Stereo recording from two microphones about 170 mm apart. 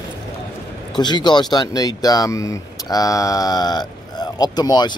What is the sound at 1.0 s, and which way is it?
Speech, 25° left (ahead or behind).